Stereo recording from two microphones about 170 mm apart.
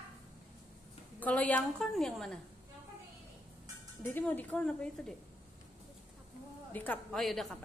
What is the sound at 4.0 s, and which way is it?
Speech, 10° left (ahead or behind).